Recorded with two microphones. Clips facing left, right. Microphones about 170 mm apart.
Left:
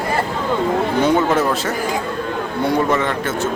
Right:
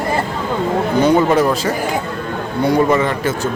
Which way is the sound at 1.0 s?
Centre (ahead or behind).